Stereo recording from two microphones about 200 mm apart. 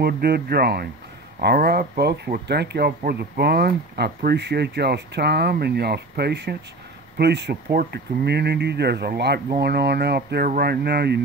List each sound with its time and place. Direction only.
0.0 s speech: 50° right (ahead or behind)